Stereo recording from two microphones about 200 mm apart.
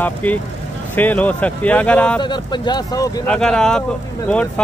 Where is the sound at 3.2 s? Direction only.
5° left (ahead or behind).